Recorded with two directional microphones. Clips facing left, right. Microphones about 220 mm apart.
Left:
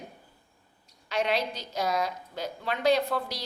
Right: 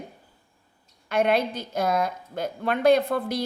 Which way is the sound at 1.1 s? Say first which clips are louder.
Right 6 dB; 55° right (ahead or behind).